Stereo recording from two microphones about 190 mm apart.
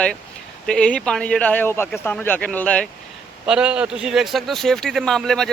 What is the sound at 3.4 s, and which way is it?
A man's voice, 5° right (ahead or behind).